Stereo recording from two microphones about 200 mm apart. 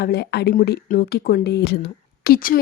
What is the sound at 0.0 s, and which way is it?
A woman's voice, 55° left (ahead or behind).